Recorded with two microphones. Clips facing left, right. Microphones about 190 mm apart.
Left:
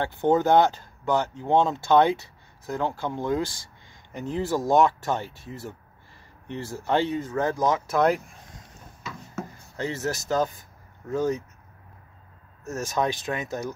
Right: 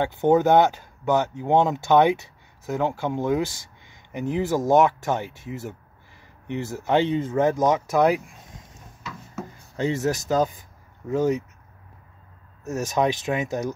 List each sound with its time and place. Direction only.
0.0 s speech: 15° right (ahead or behind)
9.3 s speech: 15° right (ahead or behind)
12.6 s speech: 15° right (ahead or behind)